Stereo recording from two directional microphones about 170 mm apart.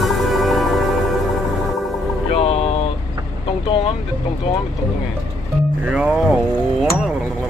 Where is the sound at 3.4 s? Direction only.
30° left (ahead or behind).